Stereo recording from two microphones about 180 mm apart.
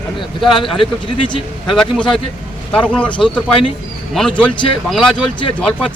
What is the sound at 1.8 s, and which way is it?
Speech, 5° left (ahead or behind).